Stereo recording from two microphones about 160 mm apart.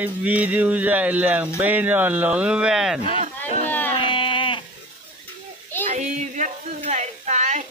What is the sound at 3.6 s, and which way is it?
Music, 10° left (ahead or behind).